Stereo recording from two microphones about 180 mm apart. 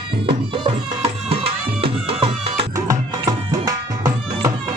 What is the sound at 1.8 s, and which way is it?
Music, 30° right (ahead or behind).